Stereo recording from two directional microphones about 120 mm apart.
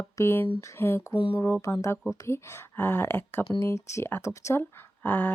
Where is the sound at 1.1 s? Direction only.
40° left (ahead or behind).